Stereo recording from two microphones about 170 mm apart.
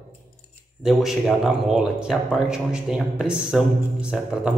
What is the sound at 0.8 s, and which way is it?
Speech, centre (ahead or behind).